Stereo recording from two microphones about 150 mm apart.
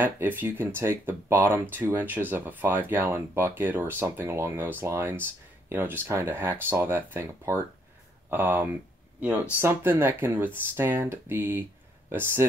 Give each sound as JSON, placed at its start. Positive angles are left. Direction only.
{"t": 0.0, "sound": "speech", "side_deg": -15}